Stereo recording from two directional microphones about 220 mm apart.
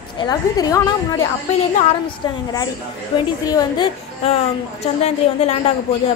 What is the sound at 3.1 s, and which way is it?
Speech, 20° left (ahead or behind).